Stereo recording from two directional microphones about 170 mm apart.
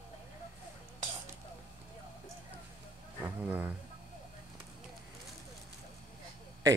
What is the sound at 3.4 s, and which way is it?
Speech, 10° right (ahead or behind).